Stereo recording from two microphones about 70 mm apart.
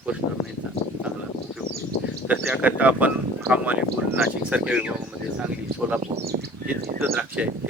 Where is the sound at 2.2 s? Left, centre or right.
Right.